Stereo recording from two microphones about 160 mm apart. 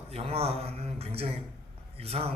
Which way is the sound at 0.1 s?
40° right (ahead or behind).